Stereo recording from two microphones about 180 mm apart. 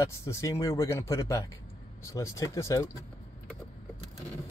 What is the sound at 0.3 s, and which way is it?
Speech, 15° left (ahead or behind).